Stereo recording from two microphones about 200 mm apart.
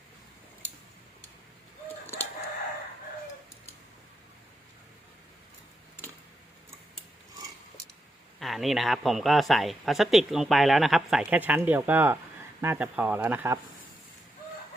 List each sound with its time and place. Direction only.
8.4 s speech: centre (ahead or behind)